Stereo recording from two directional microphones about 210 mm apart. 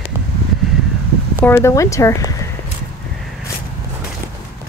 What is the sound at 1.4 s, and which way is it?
Speech, 10° left (ahead or behind).